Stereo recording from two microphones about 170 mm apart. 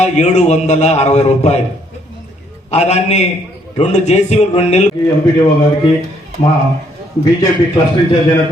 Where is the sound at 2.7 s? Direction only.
40° left (ahead or behind).